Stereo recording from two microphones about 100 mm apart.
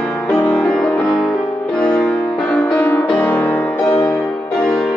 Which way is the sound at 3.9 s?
30° left (ahead or behind).